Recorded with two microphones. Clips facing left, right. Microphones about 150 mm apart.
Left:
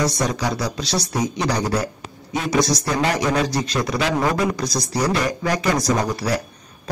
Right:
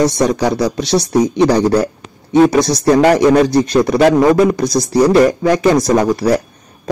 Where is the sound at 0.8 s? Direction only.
25° right (ahead or behind).